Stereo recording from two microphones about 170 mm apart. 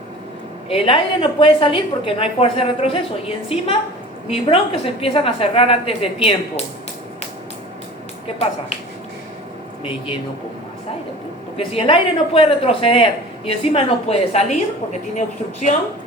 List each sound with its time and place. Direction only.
0.7 s a woman's voice: 35° left (ahead or behind)
11.5 s a woman's voice: 35° left (ahead or behind)